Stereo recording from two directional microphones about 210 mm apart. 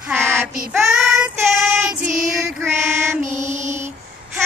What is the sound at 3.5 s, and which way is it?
Female singing, 35° right (ahead or behind).